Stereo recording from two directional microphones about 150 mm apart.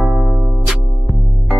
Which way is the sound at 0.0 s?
5° right (ahead or behind).